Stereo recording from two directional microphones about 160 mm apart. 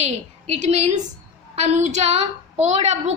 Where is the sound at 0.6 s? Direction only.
45° right (ahead or behind).